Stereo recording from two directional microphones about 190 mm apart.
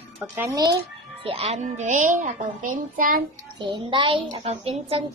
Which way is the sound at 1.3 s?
35° right (ahead or behind).